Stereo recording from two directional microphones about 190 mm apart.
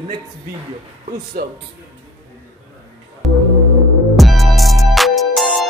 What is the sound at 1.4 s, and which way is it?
Speech, 55° right (ahead or behind).